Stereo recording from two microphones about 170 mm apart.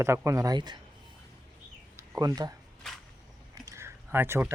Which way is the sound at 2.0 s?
20° right (ahead or behind).